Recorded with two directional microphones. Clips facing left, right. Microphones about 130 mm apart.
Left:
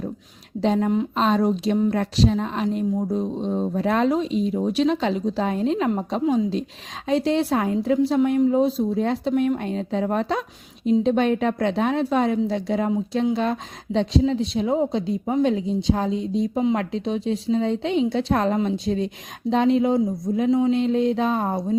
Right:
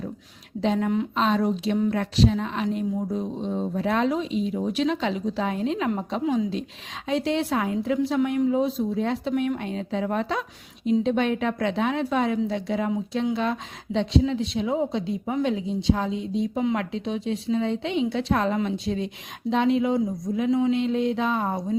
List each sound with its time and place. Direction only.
0.6 s a woman's voice: 40° left (ahead or behind)